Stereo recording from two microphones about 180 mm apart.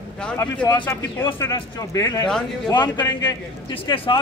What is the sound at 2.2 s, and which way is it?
Speech, 5° left (ahead or behind).